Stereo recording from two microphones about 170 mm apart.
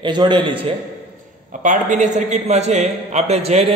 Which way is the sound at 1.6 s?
50° right (ahead or behind).